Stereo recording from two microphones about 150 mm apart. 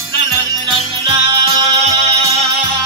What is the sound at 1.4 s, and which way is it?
Music, 45° right (ahead or behind).